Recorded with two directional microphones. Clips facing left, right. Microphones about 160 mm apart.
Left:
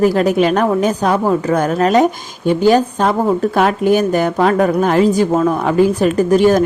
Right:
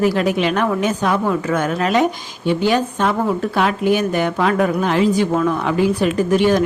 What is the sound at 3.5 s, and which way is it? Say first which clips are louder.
A woman's voice: left 3 dB; 45° left (ahead or behind).